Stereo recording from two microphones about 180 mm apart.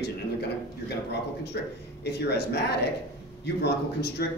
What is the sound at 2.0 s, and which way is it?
Speech, 65° left (ahead or behind).